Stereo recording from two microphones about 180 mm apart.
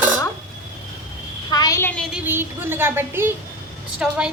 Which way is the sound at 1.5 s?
20° left (ahead or behind).